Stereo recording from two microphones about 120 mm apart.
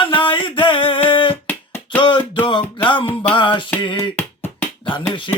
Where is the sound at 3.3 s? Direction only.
45° left (ahead or behind).